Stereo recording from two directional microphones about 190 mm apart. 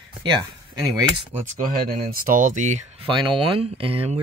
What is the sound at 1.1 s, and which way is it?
Speech, 35° right (ahead or behind).